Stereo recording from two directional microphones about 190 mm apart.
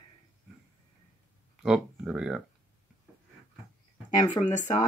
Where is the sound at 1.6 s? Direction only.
5° right (ahead or behind).